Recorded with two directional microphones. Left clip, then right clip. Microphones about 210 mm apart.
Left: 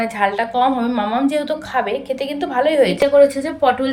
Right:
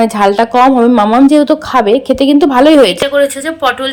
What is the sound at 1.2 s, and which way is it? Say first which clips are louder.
Speech: right 11 dB; 25° right (ahead or behind).